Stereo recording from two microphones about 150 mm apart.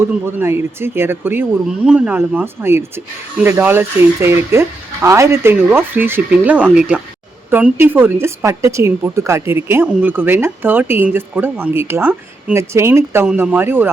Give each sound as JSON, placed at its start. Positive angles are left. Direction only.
{"t": 0.0, "sound": "a woman's voice", "side_deg": -15}